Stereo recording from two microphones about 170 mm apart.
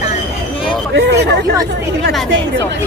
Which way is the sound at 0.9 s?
75° right (ahead or behind).